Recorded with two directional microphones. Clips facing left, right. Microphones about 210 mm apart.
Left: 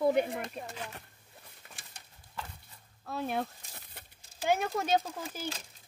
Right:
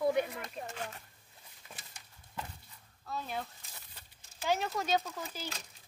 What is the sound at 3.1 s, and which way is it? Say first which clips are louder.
Speech: left 6 dB; 55° left (ahead or behind).